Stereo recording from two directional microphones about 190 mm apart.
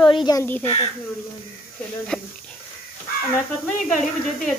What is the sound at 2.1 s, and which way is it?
Speech, 5° left (ahead or behind).